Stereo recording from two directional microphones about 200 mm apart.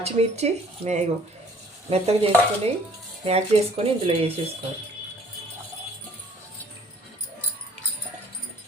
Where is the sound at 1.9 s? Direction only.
30° right (ahead or behind).